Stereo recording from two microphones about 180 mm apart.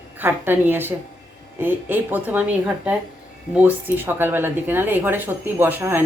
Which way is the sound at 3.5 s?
10° right (ahead or behind).